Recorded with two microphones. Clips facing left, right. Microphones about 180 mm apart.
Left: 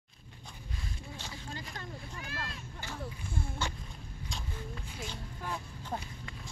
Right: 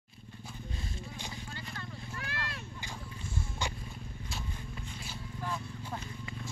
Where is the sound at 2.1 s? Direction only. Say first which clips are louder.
Right 2 dB; 65° right (ahead or behind).